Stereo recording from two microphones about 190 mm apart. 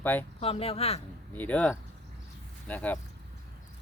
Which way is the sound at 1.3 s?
10° left (ahead or behind).